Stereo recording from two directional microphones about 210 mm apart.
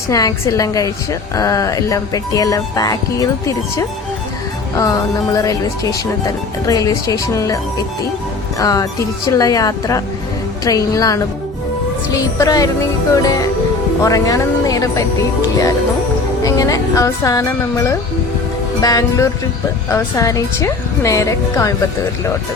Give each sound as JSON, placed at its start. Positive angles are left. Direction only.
{"t": 0.1, "sound": "speech", "side_deg": 15}
{"t": 14.0, "sound": "speech", "side_deg": 15}
{"t": 16.4, "sound": "speech", "side_deg": 15}